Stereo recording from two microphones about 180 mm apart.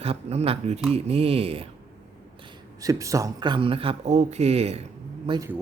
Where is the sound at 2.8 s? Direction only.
20° right (ahead or behind); by 4.8 s 35° right (ahead or behind).